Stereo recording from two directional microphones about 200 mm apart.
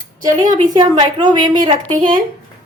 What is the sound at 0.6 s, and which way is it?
A woman's voice, 20° right (ahead or behind).